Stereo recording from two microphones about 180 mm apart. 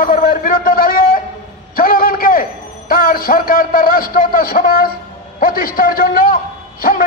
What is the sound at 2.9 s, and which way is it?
A man's voice, 55° left (ahead or behind).